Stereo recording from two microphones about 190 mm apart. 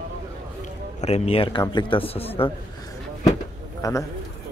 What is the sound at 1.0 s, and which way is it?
Speech, 35° left (ahead or behind).